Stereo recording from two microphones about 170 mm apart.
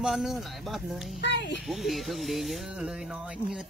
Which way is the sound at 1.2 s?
90° left.